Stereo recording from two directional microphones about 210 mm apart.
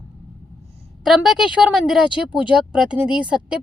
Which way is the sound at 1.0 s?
Centre (ahead or behind).